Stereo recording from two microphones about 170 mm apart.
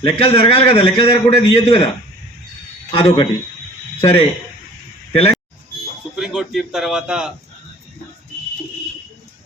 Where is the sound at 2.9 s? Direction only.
35° left (ahead or behind).